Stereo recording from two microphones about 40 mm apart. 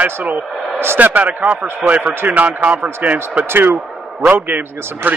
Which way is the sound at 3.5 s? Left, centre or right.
Right.